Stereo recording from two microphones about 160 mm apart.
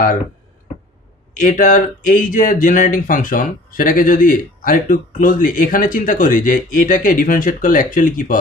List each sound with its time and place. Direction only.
1.4 s speech: 55° left (ahead or behind)